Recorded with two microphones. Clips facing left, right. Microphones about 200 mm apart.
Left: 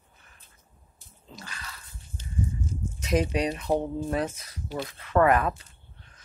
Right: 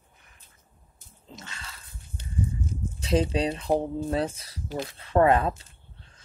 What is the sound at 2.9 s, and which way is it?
Speech, 30° right (ahead or behind).